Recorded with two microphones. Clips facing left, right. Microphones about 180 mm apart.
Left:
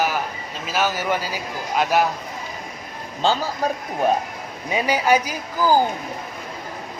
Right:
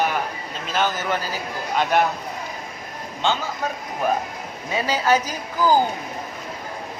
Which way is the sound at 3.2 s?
35° left (ahead or behind).